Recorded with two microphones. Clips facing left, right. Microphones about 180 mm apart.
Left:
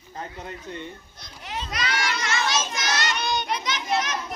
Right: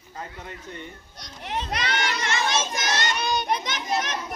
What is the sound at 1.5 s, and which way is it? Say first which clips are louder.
Speech: right 4 dB; 60° right (ahead or behind).